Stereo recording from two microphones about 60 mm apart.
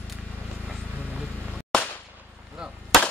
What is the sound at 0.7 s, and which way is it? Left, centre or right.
Vehicle, centre.